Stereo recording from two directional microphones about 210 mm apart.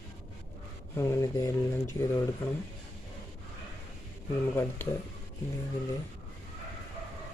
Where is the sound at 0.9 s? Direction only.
15° left (ahead or behind).